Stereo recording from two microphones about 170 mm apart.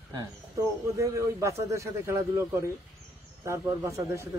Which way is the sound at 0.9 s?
15° right (ahead or behind).